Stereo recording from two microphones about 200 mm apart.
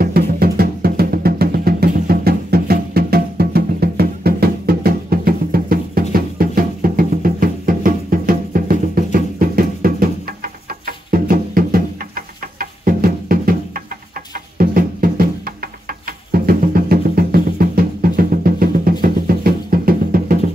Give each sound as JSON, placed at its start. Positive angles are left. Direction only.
{"t": 0.0, "sound": "music", "side_deg": -50}